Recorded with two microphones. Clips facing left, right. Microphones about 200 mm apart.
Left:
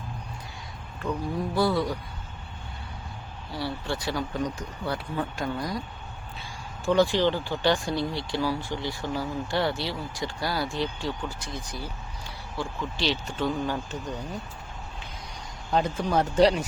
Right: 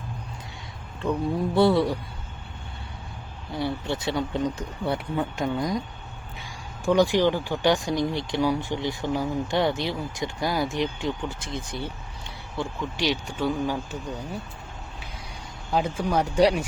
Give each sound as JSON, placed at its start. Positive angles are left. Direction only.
{"t": 1.5, "sound": "speech", "side_deg": -30}
{"t": 3.5, "sound": "speech", "side_deg": -20}
{"t": 15.7, "sound": "speech", "side_deg": -10}